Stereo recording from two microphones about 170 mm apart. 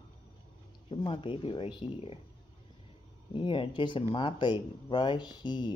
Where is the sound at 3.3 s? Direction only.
30° left (ahead or behind).